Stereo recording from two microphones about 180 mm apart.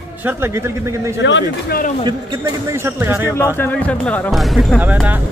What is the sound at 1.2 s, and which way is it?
Speech, 90° left.